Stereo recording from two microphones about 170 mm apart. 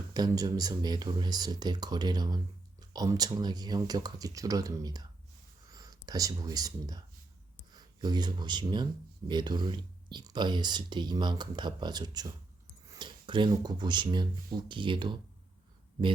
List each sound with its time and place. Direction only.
0.1 s speech: 25° right (ahead or behind)